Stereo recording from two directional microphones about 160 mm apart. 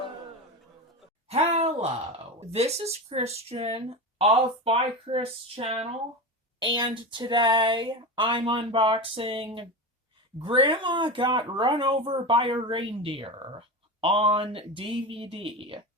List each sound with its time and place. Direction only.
1.3 s speech: 40° right (ahead or behind)